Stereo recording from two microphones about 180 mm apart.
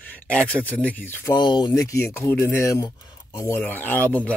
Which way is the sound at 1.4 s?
25° left (ahead or behind).